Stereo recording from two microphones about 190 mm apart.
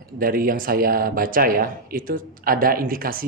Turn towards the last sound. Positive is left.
turn(degrees=-50)  # may be behind; listen again after turning